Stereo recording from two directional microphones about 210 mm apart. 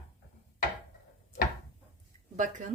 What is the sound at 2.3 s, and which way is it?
Speech, 35° right (ahead or behind).